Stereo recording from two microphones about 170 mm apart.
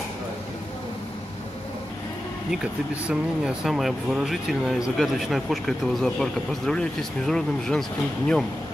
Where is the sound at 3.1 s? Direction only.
5° right (ahead or behind).